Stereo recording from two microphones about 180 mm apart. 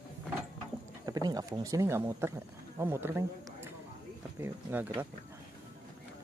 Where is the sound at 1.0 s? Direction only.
20° right (ahead or behind).